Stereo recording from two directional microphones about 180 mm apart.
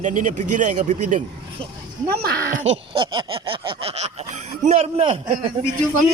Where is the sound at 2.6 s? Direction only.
30° right (ahead or behind).